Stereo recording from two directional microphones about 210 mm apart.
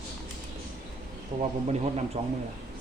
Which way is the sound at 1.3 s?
20° right (ahead or behind).